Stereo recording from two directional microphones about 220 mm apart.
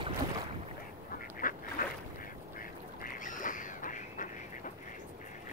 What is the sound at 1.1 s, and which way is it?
Duck, 40° left (ahead or behind).